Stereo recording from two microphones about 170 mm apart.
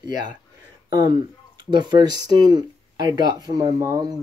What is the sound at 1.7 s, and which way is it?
Speech, 25° right (ahead or behind).